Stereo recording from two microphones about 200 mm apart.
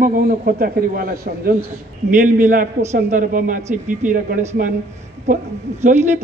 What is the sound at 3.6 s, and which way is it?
Speech, 10° right (ahead or behind).